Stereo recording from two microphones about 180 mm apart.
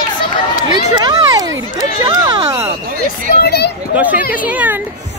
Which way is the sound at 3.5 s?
65° left (ahead or behind).